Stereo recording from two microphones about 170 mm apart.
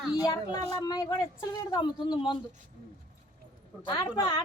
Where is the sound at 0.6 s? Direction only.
20° left (ahead or behind).